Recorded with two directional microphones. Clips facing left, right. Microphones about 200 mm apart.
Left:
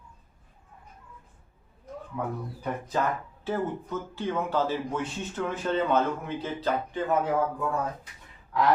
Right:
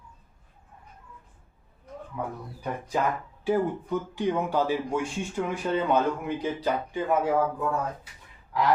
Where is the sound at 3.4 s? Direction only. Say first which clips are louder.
Right 5 dB; 15° right (ahead or behind).